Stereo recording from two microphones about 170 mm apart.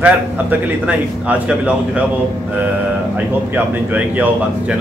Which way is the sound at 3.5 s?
10° right (ahead or behind).